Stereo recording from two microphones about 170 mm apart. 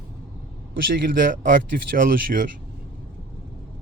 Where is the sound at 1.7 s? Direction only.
60° right (ahead or behind).